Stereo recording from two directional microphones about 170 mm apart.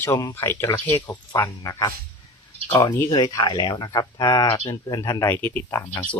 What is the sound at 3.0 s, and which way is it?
Speech, 20° left (ahead or behind).